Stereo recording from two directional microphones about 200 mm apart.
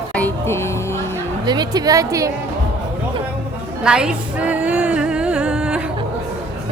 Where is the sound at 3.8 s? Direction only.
5° right (ahead or behind).